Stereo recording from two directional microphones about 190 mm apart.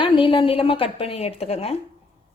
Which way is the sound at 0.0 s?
25° left (ahead or behind).